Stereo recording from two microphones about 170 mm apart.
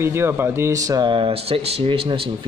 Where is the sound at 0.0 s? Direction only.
15° right (ahead or behind).